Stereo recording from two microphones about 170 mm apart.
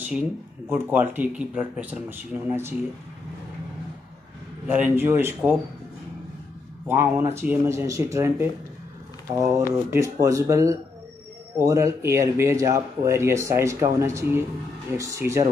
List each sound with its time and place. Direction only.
0.0 s speech: 10° right (ahead or behind)
4.6 s speech: 10° right (ahead or behind)
6.9 s speech: 15° right (ahead or behind)
9.8 s speech: 15° right (ahead or behind)